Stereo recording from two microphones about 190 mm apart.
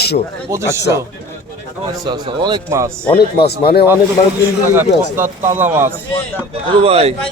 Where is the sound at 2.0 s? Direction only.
25° right (ahead or behind).